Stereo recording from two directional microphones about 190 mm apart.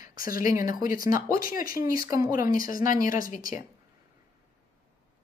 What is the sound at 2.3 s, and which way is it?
Speech, 45° left (ahead or behind).